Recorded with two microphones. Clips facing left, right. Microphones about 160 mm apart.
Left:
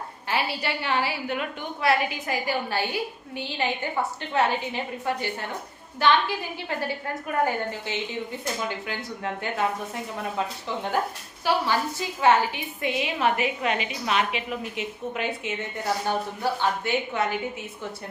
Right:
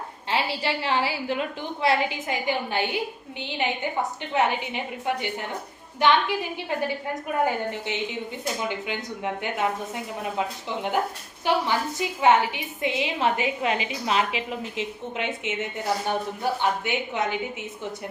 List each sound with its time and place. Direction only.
0.3 s a woman's voice: 25° right (ahead or behind)
11.4 s a woman's voice: 20° right (ahead or behind)